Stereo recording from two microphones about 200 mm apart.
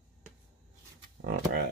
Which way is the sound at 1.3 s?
50° right (ahead or behind).